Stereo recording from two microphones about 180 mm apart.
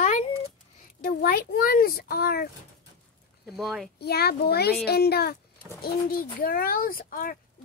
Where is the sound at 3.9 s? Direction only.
60° left (ahead or behind).